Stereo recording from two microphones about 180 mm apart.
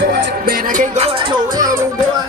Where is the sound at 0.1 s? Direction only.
55° right (ahead or behind).